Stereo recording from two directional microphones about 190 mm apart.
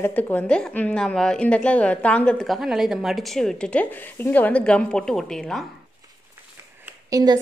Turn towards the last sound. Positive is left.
turn(degrees=-20)  # may be behind; listen again after turning